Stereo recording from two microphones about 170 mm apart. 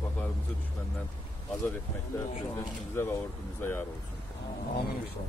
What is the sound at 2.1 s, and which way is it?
Speech, 15° left (ahead or behind).